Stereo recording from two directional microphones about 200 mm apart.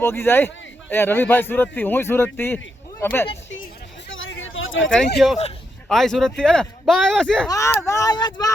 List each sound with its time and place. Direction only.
0.0 s speech: 10° left (ahead or behind)
4.1 s a sound: 75° left (ahead or behind)
5.9 s speech: centre (ahead or behind)
7.5 s speech: 15° left (ahead or behind)